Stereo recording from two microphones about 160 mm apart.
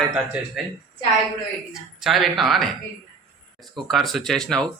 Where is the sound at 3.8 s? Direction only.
Centre (ahead or behind).